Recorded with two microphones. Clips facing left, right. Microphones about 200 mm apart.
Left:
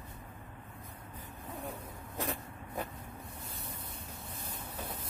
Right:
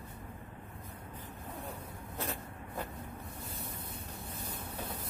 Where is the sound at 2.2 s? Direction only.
15° left (ahead or behind).